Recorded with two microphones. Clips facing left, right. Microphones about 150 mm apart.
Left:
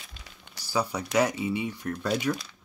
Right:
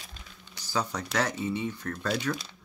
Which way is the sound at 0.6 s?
10° left (ahead or behind).